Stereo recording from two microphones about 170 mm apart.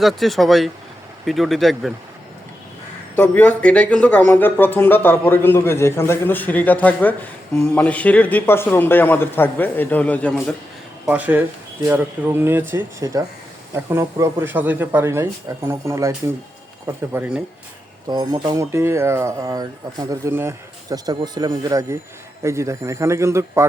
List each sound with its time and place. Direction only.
0.0 s speech: centre (ahead or behind)
3.2 s speech: 10° left (ahead or behind)
11.0 s speech: 10° right (ahead or behind)
18.1 s speech: 25° right (ahead or behind)